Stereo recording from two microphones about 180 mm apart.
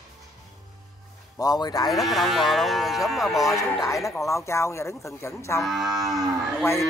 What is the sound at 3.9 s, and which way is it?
A man's voice, 15° left (ahead or behind).